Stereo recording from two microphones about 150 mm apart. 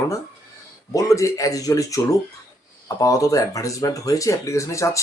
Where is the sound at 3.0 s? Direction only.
20° left (ahead or behind).